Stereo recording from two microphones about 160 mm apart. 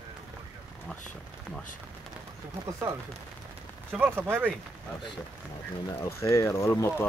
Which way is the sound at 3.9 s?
10° right (ahead or behind).